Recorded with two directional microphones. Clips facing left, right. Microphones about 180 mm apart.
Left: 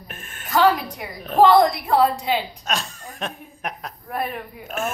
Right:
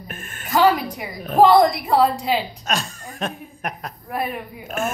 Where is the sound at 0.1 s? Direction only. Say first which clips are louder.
Right 2 dB; centre (ahead or behind).